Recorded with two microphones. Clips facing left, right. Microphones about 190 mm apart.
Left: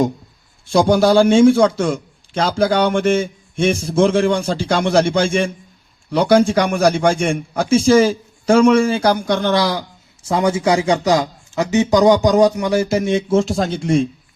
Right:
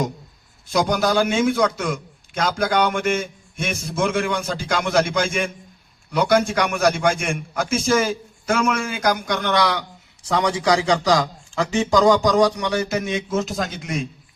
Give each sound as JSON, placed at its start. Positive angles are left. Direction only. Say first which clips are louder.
{"t": 0.7, "sound": "a man's voice", "louder": "left 7 dB", "side_deg": 30}